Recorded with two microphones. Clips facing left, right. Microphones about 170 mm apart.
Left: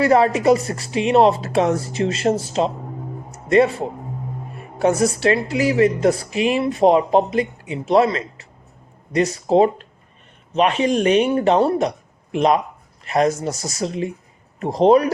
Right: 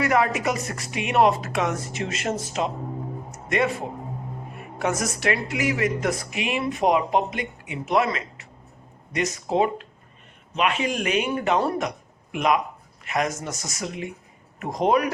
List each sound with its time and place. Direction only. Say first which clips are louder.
0.0 s a woman's voice: left 7 dB; 30° left (ahead or behind)